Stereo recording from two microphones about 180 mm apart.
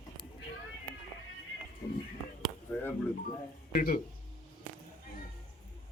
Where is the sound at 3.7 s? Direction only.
55° left (ahead or behind).